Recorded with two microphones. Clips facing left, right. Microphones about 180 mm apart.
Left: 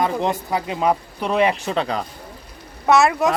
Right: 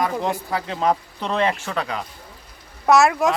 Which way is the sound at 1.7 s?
30° left (ahead or behind).